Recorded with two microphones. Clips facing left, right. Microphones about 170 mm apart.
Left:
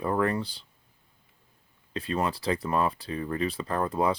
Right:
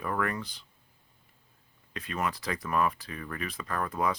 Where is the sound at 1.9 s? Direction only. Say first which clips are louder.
Left 4 dB; 30° left (ahead or behind).